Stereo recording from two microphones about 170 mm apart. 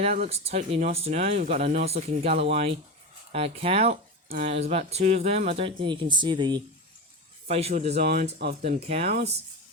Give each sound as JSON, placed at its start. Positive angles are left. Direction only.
{"t": 0.3, "sound": "speech", "side_deg": -35}
{"t": 7.4, "sound": "speech", "side_deg": -35}
{"t": 8.0, "sound": "speech", "side_deg": -65}
{"t": 8.6, "sound": "speech", "side_deg": -40}